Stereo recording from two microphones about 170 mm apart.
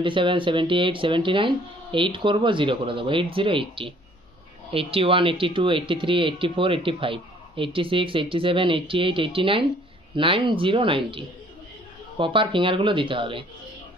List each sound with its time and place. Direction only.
0.0 s speech: 30° right (ahead or behind)